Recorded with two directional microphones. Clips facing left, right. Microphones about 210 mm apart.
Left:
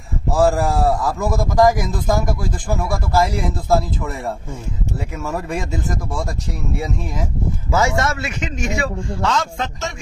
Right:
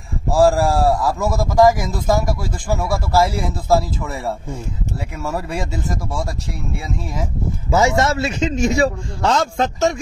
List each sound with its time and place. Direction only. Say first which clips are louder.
0.5 s speech: right 2 dB; centre (ahead or behind)
5.3 s speech: left 1 dB; centre (ahead or behind)
7.7 s a man's voice: right 3 dB; 20° right (ahead or behind); by 9.9 s 40° right (ahead or behind)